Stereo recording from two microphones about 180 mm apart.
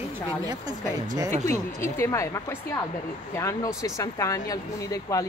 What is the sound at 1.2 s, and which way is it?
Speech, 40° right (ahead or behind).